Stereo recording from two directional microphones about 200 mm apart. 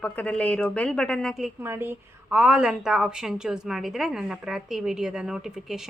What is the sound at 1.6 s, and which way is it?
A woman's voice, 10° right (ahead or behind).